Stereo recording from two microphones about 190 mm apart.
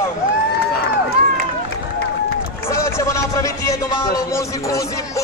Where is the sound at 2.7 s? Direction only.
15° left (ahead or behind).